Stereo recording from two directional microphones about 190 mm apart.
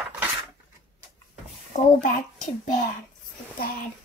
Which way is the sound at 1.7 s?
40° left (ahead or behind).